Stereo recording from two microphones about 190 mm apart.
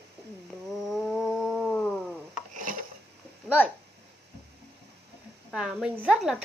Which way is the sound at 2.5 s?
45° right (ahead or behind).